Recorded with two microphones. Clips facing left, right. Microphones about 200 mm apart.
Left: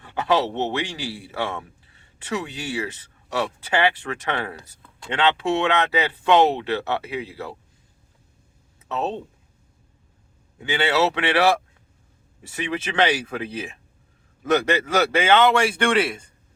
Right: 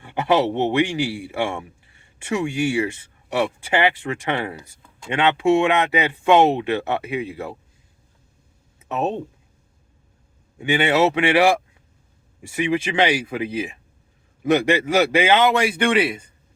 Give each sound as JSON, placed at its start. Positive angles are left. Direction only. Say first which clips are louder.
{"t": 0.0, "sound": "a man's voice", "louder": "right 3 dB", "side_deg": -20}
{"t": 8.9, "sound": "a man's voice", "louder": "right 3 dB", "side_deg": -15}
{"t": 10.6, "sound": "a man's voice", "louder": "right 3 dB", "side_deg": -20}